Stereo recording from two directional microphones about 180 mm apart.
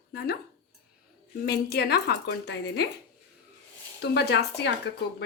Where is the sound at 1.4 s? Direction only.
65° left (ahead or behind).